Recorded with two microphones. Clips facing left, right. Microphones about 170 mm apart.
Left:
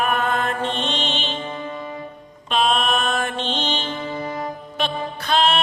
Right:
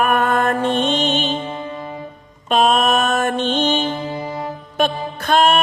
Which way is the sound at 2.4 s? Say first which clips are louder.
Right 5 dB; 45° right (ahead or behind).